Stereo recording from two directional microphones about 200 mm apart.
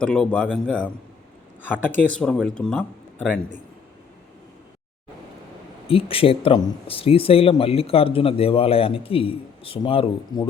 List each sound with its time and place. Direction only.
0.0 s speech: 5° left (ahead or behind)
5.9 s speech: 30° left (ahead or behind)